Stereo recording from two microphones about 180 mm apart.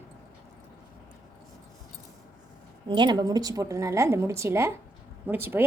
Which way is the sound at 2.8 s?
25° right (ahead or behind).